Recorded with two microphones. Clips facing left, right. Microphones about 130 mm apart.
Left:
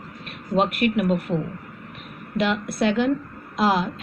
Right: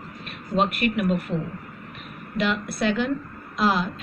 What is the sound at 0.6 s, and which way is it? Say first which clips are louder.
Speech: left 2 dB; 90° left.